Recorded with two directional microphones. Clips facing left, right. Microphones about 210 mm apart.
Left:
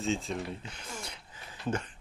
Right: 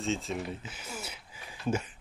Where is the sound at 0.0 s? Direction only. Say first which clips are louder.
Even; centre (ahead or behind).